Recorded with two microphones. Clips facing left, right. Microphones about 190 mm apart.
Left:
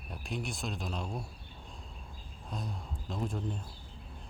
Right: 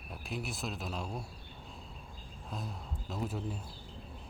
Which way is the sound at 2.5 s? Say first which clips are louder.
Left 2 dB; 5° right (ahead or behind).